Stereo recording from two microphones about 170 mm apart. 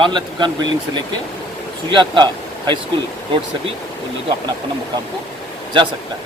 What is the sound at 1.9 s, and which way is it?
Speech, 30° right (ahead or behind).